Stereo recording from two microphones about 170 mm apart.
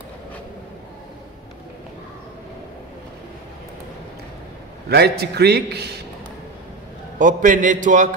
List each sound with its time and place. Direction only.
4.8 s a man's voice: 70° right (ahead or behind)
7.2 s a man's voice: 50° right (ahead or behind)